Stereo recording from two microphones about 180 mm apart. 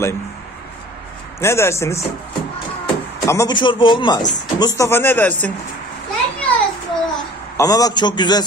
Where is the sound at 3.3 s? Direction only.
20° left (ahead or behind).